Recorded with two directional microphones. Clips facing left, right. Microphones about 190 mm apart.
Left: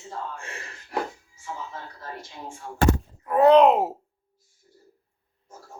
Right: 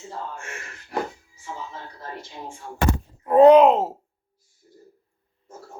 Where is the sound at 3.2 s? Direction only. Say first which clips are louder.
Right 5 dB; 25° right (ahead or behind).